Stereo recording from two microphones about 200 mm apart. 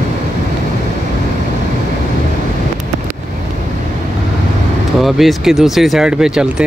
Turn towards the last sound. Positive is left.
turn(degrees=-5)  # may be behind; listen again after turning